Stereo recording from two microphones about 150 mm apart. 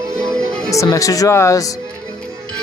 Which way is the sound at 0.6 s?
20° left (ahead or behind).